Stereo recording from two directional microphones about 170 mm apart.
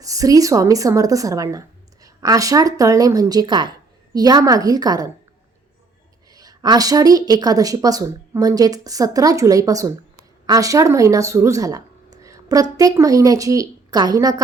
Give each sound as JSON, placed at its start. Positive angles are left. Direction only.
{"t": 0.0, "sound": "a woman's voice", "side_deg": -20}
{"t": 6.3, "sound": "a woman's voice", "side_deg": -20}